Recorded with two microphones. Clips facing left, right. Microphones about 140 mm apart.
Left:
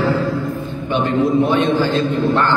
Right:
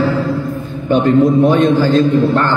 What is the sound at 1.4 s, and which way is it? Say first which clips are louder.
A man's voice: right 5 dB; 45° right (ahead or behind).